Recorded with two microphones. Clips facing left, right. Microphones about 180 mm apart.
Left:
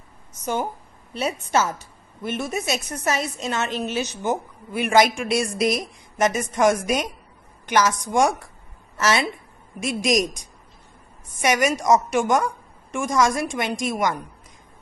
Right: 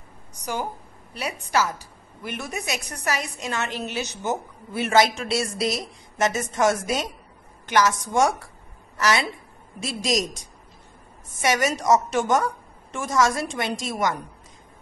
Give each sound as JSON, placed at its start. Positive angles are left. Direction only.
{"t": 0.3, "sound": "a woman's voice", "side_deg": 25}
{"t": 11.7, "sound": "a woman's voice", "side_deg": 10}